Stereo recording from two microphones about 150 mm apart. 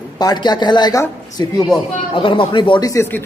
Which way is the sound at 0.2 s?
25° left (ahead or behind).